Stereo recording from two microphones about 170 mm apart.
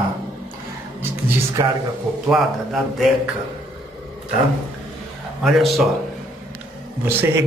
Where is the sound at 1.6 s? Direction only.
25° right (ahead or behind).